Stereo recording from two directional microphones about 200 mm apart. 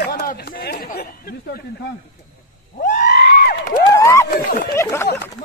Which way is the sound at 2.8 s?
40° left (ahead or behind).